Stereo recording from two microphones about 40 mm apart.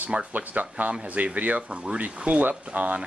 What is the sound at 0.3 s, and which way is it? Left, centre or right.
Speech, right.